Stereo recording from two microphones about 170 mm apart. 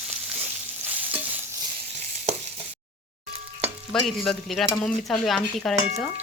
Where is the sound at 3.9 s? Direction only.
Centre (ahead or behind).